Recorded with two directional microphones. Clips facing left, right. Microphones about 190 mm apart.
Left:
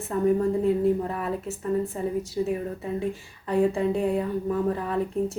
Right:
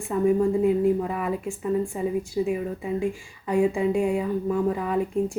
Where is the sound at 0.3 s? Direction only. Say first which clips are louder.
Right 2 dB; 15° right (ahead or behind).